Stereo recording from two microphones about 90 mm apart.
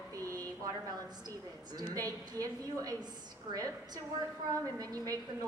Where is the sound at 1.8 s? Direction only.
40° right (ahead or behind).